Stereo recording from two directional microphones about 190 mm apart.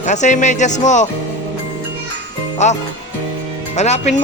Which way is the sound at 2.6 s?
40° left (ahead or behind).